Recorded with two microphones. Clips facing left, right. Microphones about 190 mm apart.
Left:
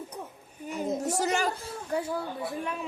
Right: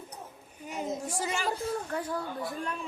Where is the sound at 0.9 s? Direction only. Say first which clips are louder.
Left 6 dB; 40° left (ahead or behind).